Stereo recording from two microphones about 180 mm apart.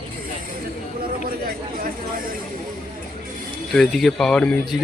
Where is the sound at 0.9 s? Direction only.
55° right (ahead or behind).